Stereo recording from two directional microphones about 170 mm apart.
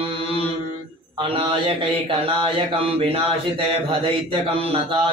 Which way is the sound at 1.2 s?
30° right (ahead or behind).